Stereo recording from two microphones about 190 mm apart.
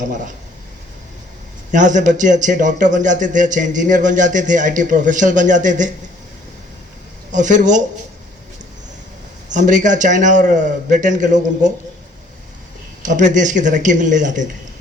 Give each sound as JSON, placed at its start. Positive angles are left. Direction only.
{"t": 1.7, "sound": "a man's voice", "side_deg": -40}
{"t": 7.3, "sound": "a man's voice", "side_deg": -40}
{"t": 9.5, "sound": "a man's voice", "side_deg": -40}
{"t": 13.1, "sound": "a man's voice", "side_deg": -40}